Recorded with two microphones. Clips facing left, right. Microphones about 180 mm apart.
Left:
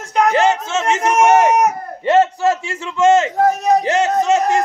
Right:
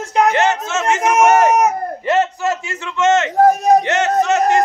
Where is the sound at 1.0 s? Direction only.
5° right (ahead or behind).